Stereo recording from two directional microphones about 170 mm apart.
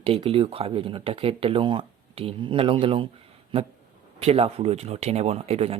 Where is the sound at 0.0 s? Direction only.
35° right (ahead or behind).